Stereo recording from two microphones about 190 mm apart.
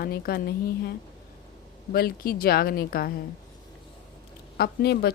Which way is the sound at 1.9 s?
50° left (ahead or behind).